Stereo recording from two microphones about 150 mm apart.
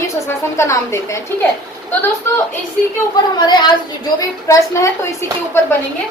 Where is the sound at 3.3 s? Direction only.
30° left (ahead or behind).